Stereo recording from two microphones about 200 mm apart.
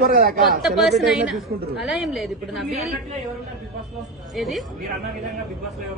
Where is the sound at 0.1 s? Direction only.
45° right (ahead or behind).